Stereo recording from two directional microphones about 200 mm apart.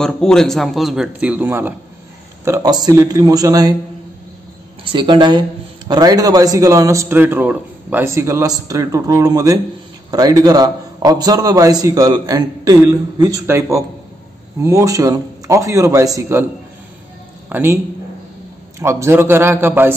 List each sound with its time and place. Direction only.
0.0 s a man's voice: 5° left (ahead or behind); by 3.7 s 20° right (ahead or behind)
4.8 s a man's voice: 25° right (ahead or behind)
17.5 s speech: 10° right (ahead or behind)
18.8 s a man's voice: 15° right (ahead or behind)